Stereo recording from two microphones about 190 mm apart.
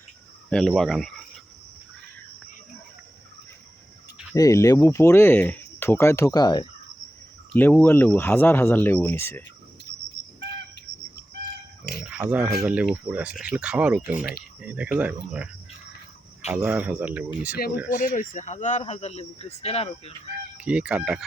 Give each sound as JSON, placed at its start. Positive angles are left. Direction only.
{"t": 0.5, "sound": "speech", "side_deg": 0}
{"t": 4.4, "sound": "speech", "side_deg": 15}
{"t": 7.5, "sound": "speech", "side_deg": 10}
{"t": 12.0, "sound": "speech", "side_deg": -5}
{"t": 16.5, "sound": "speech", "side_deg": -10}
{"t": 17.9, "sound": "speech", "side_deg": 45}
{"t": 20.6, "sound": "speech", "side_deg": -5}